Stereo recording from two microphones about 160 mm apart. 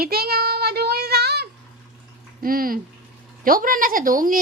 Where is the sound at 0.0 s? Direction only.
75° right (ahead or behind).